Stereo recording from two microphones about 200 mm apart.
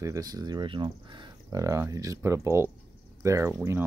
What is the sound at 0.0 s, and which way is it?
Speech, 15° right (ahead or behind).